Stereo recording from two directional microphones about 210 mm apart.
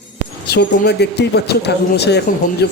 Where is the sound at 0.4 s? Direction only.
50° left (ahead or behind).